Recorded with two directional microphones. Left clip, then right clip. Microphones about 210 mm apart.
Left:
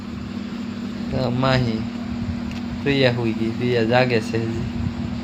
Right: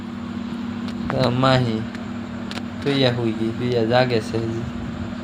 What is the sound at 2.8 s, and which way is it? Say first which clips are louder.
Speech: left 1 dB; 5° left (ahead or behind).